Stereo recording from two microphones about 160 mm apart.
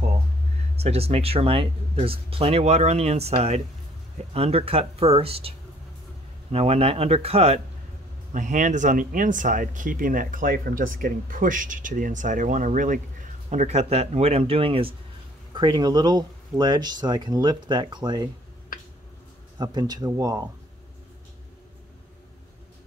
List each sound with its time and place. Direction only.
0.7 s speech: 40° right (ahead or behind)
6.5 s speech: 40° right (ahead or behind)
8.3 s speech: 50° right (ahead or behind); by 18.3 s 25° right (ahead or behind)
19.6 s speech: 25° right (ahead or behind)